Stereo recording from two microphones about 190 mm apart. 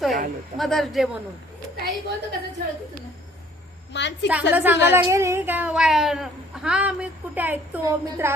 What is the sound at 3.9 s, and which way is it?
Speech, 70° left (ahead or behind).